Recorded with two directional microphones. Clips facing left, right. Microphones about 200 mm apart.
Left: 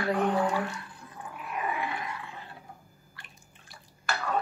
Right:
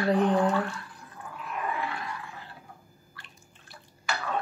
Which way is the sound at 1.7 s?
15° left (ahead or behind).